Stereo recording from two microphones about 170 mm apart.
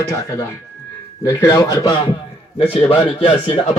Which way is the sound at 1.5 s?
25° left (ahead or behind).